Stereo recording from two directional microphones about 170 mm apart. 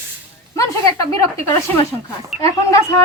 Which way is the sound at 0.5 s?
20° left (ahead or behind).